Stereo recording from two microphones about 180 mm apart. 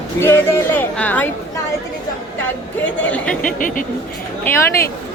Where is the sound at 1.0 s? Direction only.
10° left (ahead or behind).